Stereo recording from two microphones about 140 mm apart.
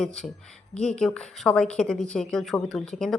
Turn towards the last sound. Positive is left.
turn(degrees=5)  # may be behind; listen again after turning